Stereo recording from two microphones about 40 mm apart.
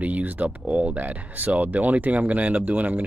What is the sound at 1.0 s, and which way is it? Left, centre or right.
Speech, right.